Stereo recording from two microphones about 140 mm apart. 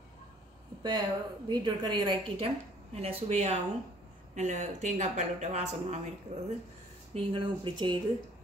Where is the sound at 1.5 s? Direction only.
30° right (ahead or behind); by 3.5 s 50° right (ahead or behind).